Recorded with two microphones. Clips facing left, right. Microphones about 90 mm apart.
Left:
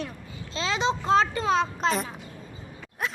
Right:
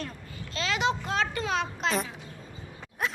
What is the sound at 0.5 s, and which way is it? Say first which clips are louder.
A child's voice: left 2 dB; 25° left (ahead or behind).